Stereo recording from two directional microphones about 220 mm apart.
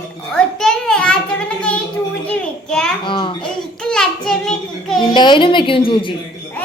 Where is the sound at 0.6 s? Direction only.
5° left (ahead or behind).